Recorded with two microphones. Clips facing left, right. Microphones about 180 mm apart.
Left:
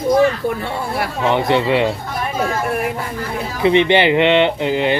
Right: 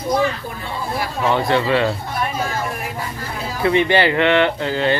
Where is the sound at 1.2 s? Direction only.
20° left (ahead or behind).